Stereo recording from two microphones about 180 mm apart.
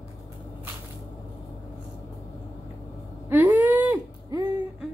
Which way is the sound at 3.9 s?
20° right (ahead or behind).